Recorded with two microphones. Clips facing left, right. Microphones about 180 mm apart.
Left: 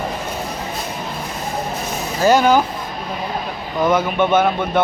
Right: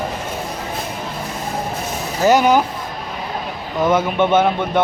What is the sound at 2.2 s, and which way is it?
Speech, 20° right (ahead or behind).